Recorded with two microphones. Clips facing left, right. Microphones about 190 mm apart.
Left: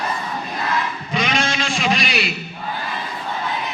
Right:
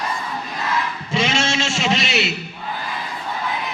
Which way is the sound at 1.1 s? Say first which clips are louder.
Right 1 dB; 25° right (ahead or behind).